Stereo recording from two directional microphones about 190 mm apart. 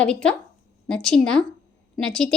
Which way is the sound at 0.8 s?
5° left (ahead or behind).